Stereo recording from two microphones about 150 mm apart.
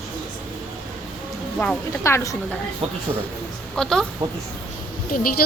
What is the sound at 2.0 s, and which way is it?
Speech, 20° left (ahead or behind).